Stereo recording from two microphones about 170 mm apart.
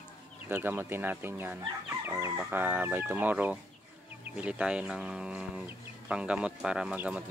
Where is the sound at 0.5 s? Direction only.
10° right (ahead or behind).